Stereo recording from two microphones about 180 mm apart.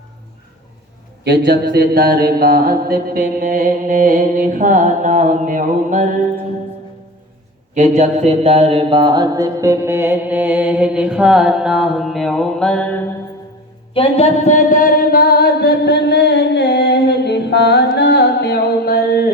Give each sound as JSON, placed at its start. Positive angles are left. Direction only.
{"t": 1.2, "sound": "mantra", "side_deg": -65}
{"t": 7.7, "sound": "a sound", "side_deg": -40}
{"t": 13.9, "sound": "music", "side_deg": 35}